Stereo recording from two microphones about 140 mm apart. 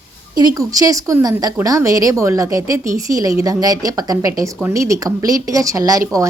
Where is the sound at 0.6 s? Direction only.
25° right (ahead or behind).